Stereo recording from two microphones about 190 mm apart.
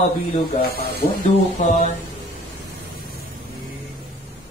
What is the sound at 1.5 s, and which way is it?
Speech, 35° left (ahead or behind).